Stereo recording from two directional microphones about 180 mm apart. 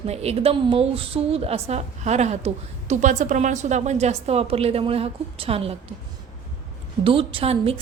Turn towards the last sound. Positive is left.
turn(degrees=-30)  # may be behind; listen again after turning